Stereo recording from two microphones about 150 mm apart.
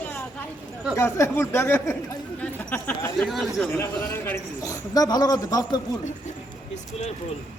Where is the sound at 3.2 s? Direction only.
Centre (ahead or behind).